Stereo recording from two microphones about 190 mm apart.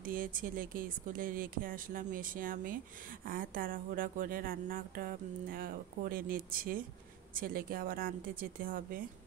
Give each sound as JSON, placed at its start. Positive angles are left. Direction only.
{"t": 0.0, "sound": "speech", "side_deg": -45}